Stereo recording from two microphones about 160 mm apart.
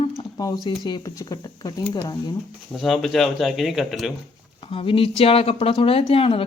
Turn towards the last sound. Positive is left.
turn(degrees=35)  # may be behind; listen again after turning